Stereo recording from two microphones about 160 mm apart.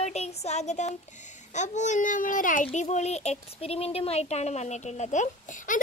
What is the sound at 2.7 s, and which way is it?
Speech, 45° left (ahead or behind).